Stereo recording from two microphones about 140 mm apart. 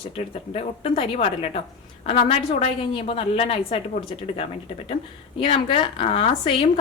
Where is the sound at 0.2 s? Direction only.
50° left (ahead or behind).